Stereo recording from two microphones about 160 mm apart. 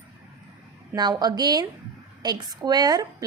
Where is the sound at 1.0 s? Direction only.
25° right (ahead or behind).